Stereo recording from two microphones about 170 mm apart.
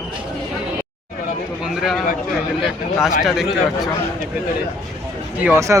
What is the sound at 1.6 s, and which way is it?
Speech, 5° right (ahead or behind).